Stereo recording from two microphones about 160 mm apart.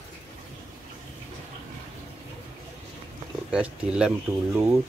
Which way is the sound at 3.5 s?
5° right (ahead or behind).